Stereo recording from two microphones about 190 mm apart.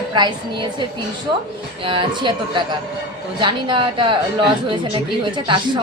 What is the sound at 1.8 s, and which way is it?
A woman's voice, 25° right (ahead or behind).